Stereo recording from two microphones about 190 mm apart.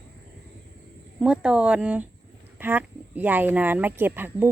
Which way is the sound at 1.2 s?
5° right (ahead or behind).